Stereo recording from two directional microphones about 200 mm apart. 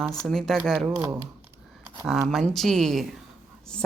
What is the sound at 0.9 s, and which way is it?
Speech, 15° right (ahead or behind).